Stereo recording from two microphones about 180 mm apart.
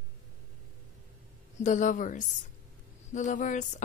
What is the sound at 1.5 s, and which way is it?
A man's voice, 40° left (ahead or behind).